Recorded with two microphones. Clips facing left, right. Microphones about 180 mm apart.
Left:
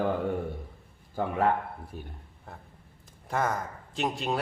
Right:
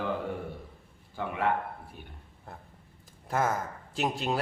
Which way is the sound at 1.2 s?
40° left (ahead or behind).